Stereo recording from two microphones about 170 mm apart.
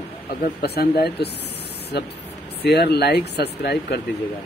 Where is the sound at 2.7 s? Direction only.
75° left (ahead or behind).